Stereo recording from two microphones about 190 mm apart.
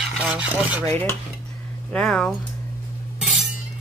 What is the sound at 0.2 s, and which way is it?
Speech, 5° right (ahead or behind).